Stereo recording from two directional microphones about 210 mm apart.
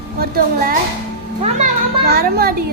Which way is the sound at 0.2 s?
45° right (ahead or behind).